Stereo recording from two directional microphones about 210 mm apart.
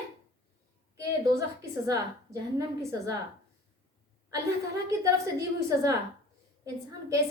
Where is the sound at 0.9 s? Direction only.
15° right (ahead or behind).